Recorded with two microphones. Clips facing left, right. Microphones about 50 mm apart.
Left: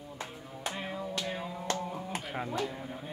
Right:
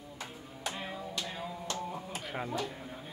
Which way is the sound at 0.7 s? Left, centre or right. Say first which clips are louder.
Left 3 dB; centre.